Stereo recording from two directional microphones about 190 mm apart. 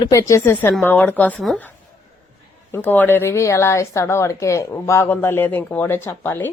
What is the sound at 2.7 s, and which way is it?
Speech, 10° left (ahead or behind).